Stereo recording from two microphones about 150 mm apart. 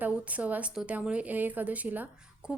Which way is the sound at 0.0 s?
10° right (ahead or behind).